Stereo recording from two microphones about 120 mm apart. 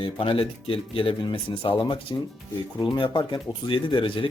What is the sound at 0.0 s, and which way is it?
Speech, 45° left (ahead or behind).